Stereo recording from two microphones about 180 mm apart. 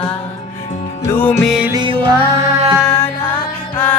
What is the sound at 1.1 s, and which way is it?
Music, 10° left (ahead or behind).